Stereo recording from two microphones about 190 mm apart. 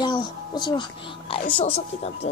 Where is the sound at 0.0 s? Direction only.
25° left (ahead or behind).